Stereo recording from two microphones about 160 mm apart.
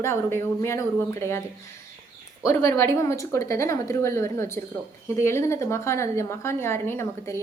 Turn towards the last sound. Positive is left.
turn(degrees=15)  # may be behind; listen again after turning